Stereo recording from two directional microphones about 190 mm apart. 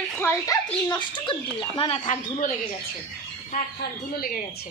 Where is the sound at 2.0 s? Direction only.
40° left (ahead or behind).